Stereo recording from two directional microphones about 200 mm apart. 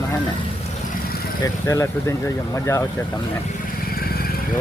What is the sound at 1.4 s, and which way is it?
Speech, 15° left (ahead or behind).